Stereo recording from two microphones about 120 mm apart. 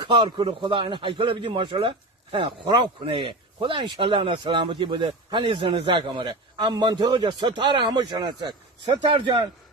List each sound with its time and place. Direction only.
0.0 s a man's voice: 40° right (ahead or behind)